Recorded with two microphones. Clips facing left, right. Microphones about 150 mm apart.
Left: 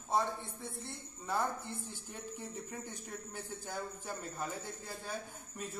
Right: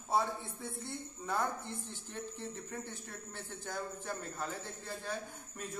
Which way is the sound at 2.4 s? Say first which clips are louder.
Right 1 dB; 15° left (ahead or behind).